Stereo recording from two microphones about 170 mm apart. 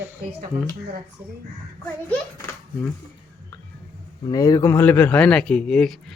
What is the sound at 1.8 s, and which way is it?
Speech, 10° left (ahead or behind).